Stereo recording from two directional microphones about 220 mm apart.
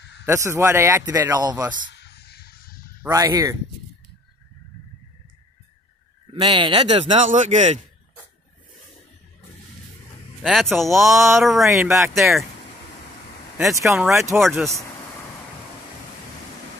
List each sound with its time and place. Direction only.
0.2 s speech: 10° right (ahead or behind)
1.9 s a sound: 50° left (ahead or behind)
3.0 s speech: 15° right (ahead or behind)
6.3 s a man's voice: 20° right (ahead or behind)
10.4 s speech: centre (ahead or behind)
11.1 s speech: 15° right (ahead or behind)
11.3 s speech: centre (ahead or behind)
11.6 s speech: 15° right (ahead or behind)
12.1 s speech: centre (ahead or behind)
13.7 s speech: 10° right (ahead or behind)
14.4 s speech: centre (ahead or behind)